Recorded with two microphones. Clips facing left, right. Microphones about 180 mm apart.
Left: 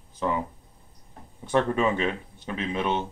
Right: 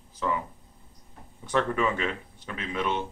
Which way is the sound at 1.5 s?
25° left (ahead or behind).